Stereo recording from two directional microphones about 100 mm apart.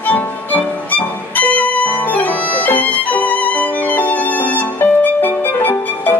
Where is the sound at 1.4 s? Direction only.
15° left (ahead or behind).